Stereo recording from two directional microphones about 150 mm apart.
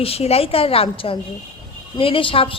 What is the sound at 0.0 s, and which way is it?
A woman's voice, 40° left (ahead or behind).